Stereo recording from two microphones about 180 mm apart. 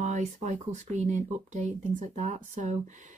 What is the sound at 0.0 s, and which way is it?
Speech, 40° right (ahead or behind).